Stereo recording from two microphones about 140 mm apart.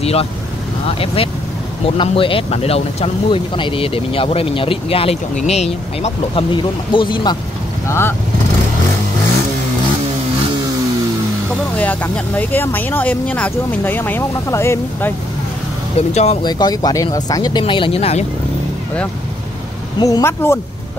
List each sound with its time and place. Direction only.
0.0 s vehicle: 45° left (ahead or behind)
0.9 s speech: 40° left (ahead or behind)
6.5 s speech: 35° left (ahead or behind)
11.8 s speech: 10° left (ahead or behind)
16.0 s speech: 50° left (ahead or behind)
16.4 s speech: 30° left (ahead or behind); by 18.2 s 45° left (ahead or behind)
20.0 s speech: 20° left (ahead or behind)